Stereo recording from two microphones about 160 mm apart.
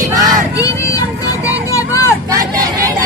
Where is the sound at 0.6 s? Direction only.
20° left (ahead or behind).